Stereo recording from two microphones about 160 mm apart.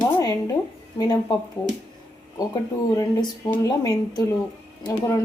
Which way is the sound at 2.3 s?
20° left (ahead or behind).